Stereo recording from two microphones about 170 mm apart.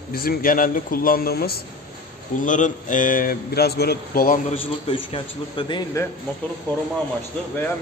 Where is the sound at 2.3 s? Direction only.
50° left (ahead or behind).